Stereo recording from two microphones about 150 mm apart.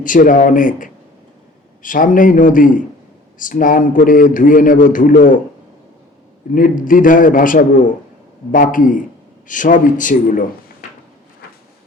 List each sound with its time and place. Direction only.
0.0 s a man's voice: 60° left (ahead or behind)
6.5 s a man's voice: 65° left (ahead or behind)